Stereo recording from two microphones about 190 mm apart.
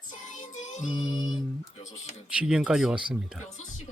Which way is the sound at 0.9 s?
20° left (ahead or behind).